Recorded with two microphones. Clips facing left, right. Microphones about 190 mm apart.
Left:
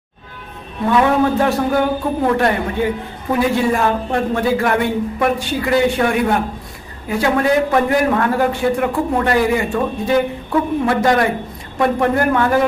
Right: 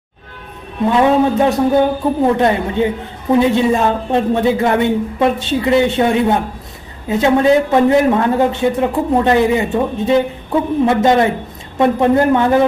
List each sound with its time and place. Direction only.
0.9 s a woman's voice: 20° right (ahead or behind)